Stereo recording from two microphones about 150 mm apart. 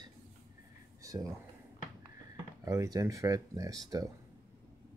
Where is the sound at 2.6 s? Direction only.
20° right (ahead or behind).